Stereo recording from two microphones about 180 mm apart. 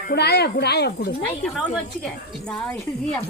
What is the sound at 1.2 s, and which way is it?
A woman's voice, 5° left (ahead or behind).